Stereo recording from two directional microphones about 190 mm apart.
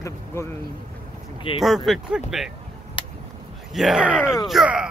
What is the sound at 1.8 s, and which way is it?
Speech, centre (ahead or behind).